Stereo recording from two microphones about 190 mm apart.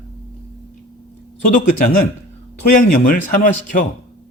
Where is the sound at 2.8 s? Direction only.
50° left (ahead or behind).